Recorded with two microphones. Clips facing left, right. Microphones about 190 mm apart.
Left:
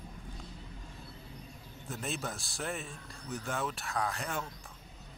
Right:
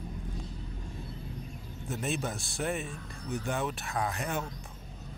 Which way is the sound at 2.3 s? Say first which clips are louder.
Right 5 dB; centre (ahead or behind).